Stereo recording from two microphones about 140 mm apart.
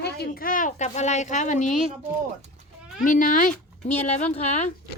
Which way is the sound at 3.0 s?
70° left (ahead or behind).